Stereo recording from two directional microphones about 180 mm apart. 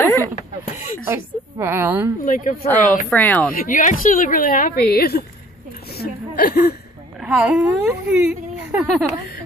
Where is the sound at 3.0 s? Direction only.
10° left (ahead or behind).